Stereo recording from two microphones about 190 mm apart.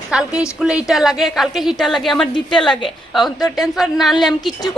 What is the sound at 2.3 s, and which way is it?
Speech, 25° left (ahead or behind).